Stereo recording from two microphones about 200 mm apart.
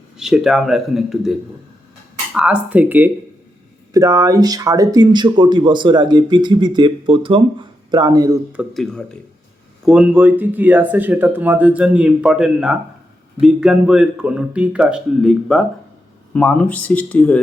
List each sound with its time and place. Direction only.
0.2 s speech: centre (ahead or behind); by 8.4 s 20° right (ahead or behind)
8.5 s speech: centre (ahead or behind)